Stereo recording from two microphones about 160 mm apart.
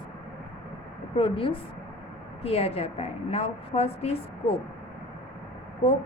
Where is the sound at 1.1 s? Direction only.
35° left (ahead or behind).